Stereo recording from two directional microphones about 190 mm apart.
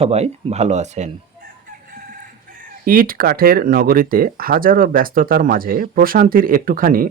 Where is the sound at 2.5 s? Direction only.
50° right (ahead or behind).